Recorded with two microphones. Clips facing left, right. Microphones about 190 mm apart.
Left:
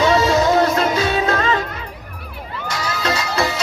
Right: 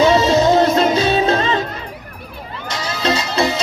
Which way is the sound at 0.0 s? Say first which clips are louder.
Right 3 dB; 20° right (ahead or behind).